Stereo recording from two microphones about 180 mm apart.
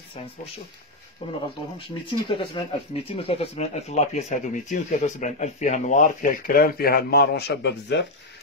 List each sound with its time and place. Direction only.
1.2 s speech: 30° left (ahead or behind); by 8.0 s 70° left (ahead or behind)